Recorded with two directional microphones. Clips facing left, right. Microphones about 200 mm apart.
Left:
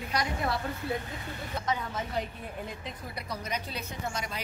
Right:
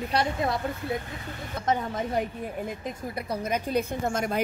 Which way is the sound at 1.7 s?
50° right (ahead or behind).